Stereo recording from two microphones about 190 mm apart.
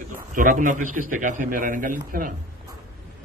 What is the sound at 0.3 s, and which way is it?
A man's voice, 45° right (ahead or behind).